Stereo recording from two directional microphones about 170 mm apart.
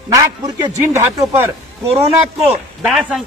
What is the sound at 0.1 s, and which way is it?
A man's voice, 20° right (ahead or behind).